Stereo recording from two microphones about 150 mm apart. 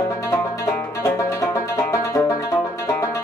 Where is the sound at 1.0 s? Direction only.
20° left (ahead or behind).